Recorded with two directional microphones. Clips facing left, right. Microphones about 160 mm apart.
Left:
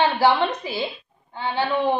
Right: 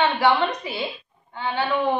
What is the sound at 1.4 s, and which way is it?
Speech, 25° left (ahead or behind).